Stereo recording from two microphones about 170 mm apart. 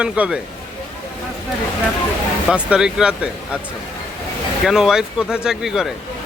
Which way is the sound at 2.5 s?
5° right (ahead or behind).